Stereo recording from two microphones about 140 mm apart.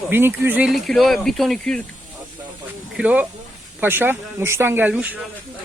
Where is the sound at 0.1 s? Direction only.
15° right (ahead or behind).